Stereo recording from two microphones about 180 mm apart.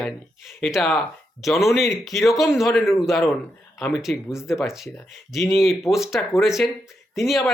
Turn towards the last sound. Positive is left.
turn(degrees=0)  # may be behind; listen again after turning